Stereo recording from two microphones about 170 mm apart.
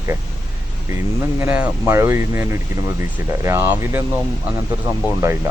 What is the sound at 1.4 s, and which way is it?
Speech, 10° right (ahead or behind).